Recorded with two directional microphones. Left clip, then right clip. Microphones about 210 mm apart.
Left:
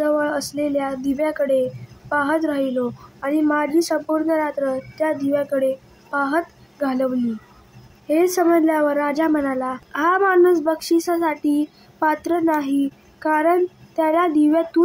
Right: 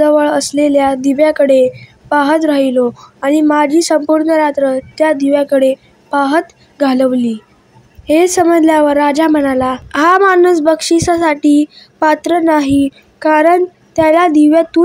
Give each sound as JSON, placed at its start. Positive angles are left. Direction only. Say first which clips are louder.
{"t": 0.0, "sound": "speech", "louder": "right 10 dB", "side_deg": -30}
{"t": 8.1, "sound": "speech", "louder": "right 7 dB", "side_deg": -30}